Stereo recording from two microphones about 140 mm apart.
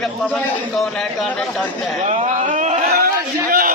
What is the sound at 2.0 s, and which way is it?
A man's voice, 55° right (ahead or behind).